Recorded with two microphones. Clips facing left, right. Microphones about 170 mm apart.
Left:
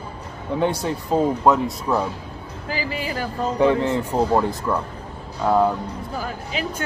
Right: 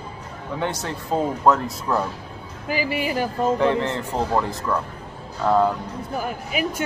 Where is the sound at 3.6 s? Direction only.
10° left (ahead or behind).